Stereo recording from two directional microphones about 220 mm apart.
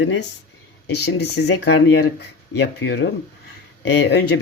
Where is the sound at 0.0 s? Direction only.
55° left (ahead or behind).